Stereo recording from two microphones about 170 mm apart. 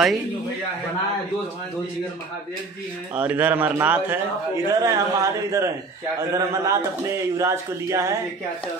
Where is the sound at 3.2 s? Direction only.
10° right (ahead or behind).